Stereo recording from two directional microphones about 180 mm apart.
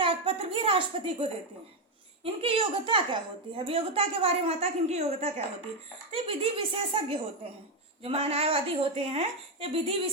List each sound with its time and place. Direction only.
0.0 s a woman's voice: 30° right (ahead or behind)